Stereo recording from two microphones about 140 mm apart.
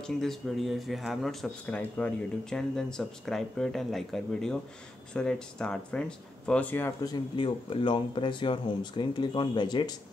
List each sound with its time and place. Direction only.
0.0 s speech: 5° left (ahead or behind)
7.1 s speech: 35° left (ahead or behind)